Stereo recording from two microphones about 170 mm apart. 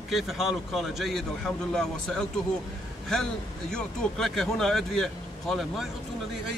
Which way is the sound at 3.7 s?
5° left (ahead or behind).